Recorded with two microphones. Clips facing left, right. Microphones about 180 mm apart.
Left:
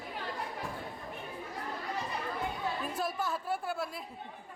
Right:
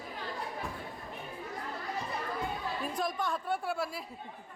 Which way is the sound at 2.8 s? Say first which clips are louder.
Right 1 dB; 5° left (ahead or behind).